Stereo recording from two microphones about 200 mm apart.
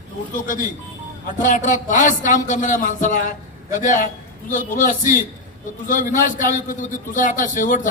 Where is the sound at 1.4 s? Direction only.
40° left (ahead or behind).